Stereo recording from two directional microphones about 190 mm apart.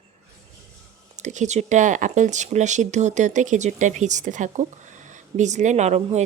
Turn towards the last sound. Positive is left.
turn(degrees=-35)  # may be behind; listen again after turning